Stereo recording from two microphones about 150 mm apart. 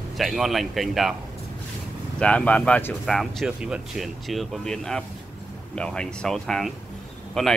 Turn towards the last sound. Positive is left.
turn(degrees=5)  # may be behind; listen again after turning